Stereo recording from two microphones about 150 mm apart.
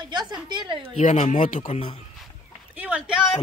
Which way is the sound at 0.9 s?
55° left (ahead or behind).